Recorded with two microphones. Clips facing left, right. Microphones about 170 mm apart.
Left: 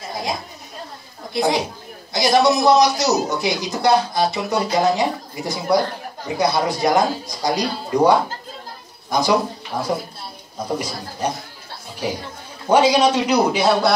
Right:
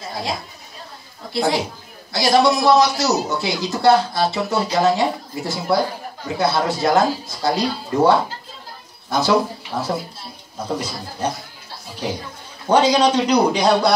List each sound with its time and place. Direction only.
0.1 s a man's voice: 20° left (ahead or behind)
12.6 s speech: 10° left (ahead or behind)